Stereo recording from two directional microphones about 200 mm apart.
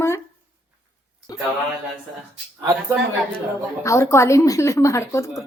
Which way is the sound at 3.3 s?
15° left (ahead or behind).